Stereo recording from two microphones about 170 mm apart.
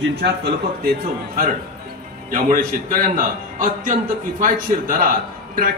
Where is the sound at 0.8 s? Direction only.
55° right (ahead or behind).